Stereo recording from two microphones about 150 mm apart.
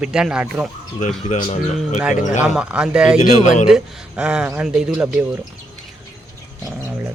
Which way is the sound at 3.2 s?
55° left (ahead or behind).